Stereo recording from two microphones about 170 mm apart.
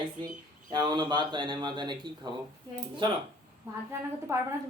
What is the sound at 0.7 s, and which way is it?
A man's voice, 25° right (ahead or behind).